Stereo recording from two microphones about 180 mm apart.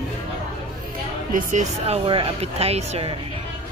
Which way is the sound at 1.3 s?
40° right (ahead or behind).